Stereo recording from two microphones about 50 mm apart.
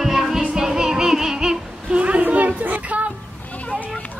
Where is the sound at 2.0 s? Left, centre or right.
Right.